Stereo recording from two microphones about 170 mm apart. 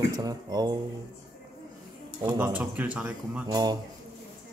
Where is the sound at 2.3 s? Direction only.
10° right (ahead or behind).